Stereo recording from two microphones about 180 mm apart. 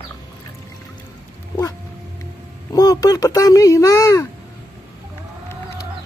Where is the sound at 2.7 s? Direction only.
20° left (ahead or behind).